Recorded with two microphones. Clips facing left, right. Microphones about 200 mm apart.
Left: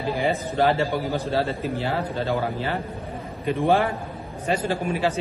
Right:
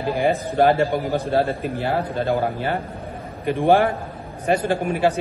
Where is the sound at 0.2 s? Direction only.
55° right (ahead or behind).